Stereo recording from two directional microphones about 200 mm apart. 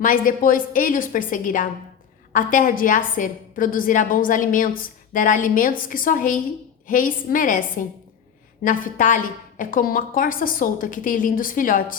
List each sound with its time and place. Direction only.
0.0 s a woman's voice: 45° left (ahead or behind)